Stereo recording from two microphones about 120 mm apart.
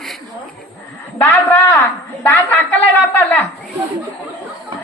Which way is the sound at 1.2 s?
20° left (ahead or behind).